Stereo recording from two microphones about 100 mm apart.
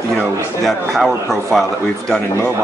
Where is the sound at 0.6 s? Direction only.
Centre (ahead or behind).